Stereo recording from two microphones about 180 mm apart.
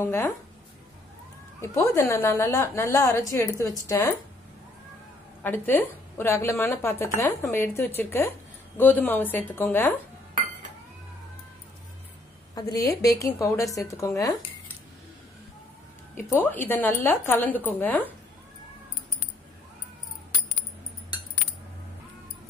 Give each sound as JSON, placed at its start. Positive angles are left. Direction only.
{"t": 0.0, "sound": "a woman's voice", "side_deg": 10}
{"t": 1.6, "sound": "a woman's voice", "side_deg": 15}
{"t": 5.4, "sound": "a woman's voice", "side_deg": 10}
{"t": 12.5, "sound": "a woman's voice", "side_deg": 20}
{"t": 16.2, "sound": "a woman's voice", "side_deg": 10}